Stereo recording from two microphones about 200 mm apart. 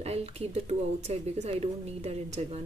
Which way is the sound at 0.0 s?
30° right (ahead or behind).